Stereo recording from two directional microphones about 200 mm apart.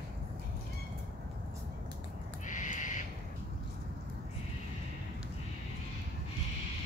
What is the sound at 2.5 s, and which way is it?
Owl, 40° left (ahead or behind).